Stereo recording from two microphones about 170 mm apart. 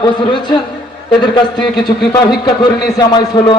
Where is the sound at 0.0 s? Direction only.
25° left (ahead or behind).